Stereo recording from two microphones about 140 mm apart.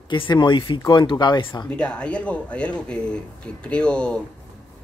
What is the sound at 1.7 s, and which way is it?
Speech, 10° left (ahead or behind).